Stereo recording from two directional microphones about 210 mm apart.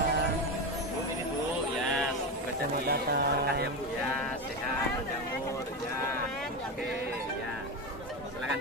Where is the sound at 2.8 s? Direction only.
50° right (ahead or behind).